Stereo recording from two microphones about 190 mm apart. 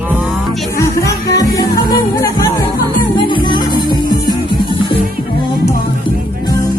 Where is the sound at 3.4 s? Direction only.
25° left (ahead or behind).